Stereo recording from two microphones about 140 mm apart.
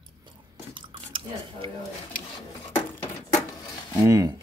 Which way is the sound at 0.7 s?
40° right (ahead or behind).